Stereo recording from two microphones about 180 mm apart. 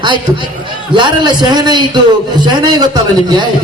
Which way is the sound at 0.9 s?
25° right (ahead or behind).